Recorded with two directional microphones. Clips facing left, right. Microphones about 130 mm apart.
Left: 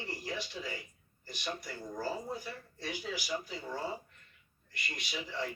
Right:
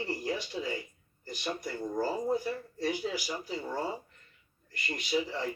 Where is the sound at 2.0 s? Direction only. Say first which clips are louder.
Right 8 dB; 40° right (ahead or behind).